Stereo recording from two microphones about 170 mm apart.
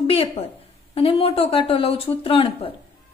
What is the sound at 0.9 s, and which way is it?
A woman's voice, 35° left (ahead or behind).